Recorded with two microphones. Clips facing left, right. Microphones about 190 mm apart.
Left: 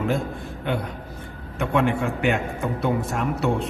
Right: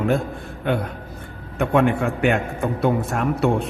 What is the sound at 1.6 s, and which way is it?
A man's voice, 55° right (ahead or behind).